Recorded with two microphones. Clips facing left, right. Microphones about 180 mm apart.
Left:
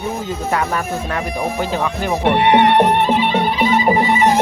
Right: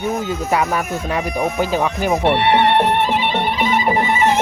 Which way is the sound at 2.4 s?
15° left (ahead or behind).